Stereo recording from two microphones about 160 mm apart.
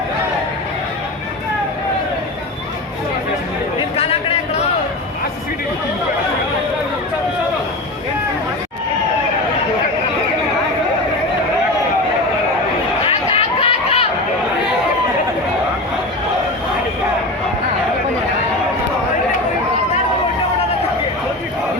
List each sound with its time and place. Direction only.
3.8 s chatter: 40° left (ahead or behind)
13.1 s chatter: 40° left (ahead or behind)